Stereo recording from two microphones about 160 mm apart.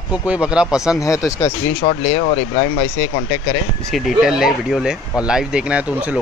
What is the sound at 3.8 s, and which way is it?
Speech, centre (ahead or behind).